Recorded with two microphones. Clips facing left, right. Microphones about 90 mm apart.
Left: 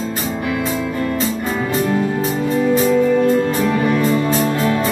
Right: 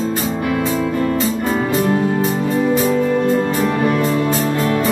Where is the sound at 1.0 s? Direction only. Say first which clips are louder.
Right 2 dB; 30° right (ahead or behind).